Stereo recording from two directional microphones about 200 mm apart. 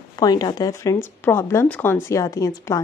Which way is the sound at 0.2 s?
20° left (ahead or behind).